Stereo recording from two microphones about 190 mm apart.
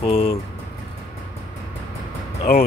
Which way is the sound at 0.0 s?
30° left (ahead or behind).